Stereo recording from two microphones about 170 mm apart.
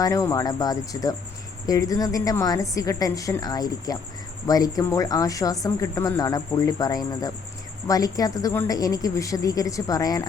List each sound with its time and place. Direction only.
0.0 s speech: 20° left (ahead or behind)